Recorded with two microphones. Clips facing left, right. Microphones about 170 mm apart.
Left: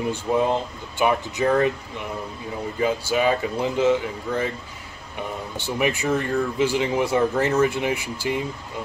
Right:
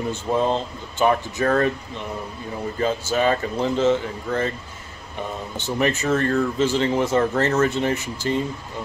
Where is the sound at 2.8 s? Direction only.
10° left (ahead or behind).